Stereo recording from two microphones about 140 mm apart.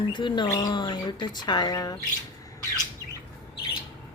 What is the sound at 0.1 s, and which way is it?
Speech, 35° left (ahead or behind).